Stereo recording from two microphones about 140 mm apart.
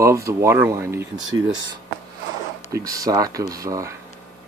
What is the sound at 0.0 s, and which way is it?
Speech, 20° right (ahead or behind).